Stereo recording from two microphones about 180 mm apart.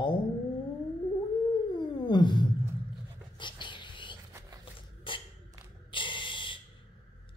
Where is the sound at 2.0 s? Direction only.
25° left (ahead or behind).